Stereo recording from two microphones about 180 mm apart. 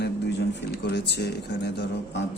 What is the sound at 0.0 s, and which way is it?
Speech, 70° left (ahead or behind).